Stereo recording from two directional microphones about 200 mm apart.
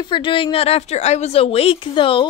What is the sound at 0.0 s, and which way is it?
A woman's voice, 25° left (ahead or behind).